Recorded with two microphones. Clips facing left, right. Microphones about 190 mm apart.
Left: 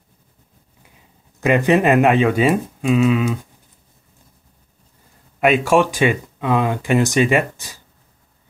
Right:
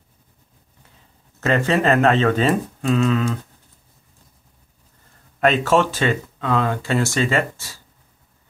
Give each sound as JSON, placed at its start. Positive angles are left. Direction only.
{"t": 1.4, "sound": "speech", "side_deg": 15}
{"t": 5.4, "sound": "speech", "side_deg": 10}